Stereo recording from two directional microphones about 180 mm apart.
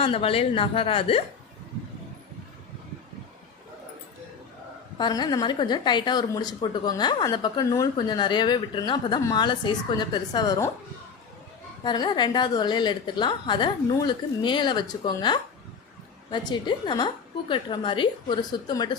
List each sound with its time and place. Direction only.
0.0 s a woman's voice: 30° left (ahead or behind)
4.9 s a woman's voice: 25° left (ahead or behind)
11.8 s a woman's voice: 25° left (ahead or behind)